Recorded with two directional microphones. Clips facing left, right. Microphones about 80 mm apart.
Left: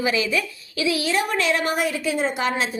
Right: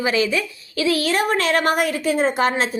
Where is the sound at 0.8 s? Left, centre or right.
Right.